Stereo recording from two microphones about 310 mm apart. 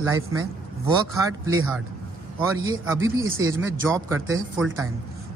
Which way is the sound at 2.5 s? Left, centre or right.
Centre.